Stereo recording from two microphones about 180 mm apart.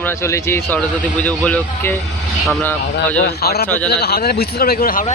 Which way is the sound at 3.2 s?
60° left (ahead or behind).